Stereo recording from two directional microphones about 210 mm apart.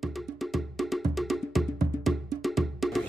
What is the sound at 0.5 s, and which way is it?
Music, centre (ahead or behind).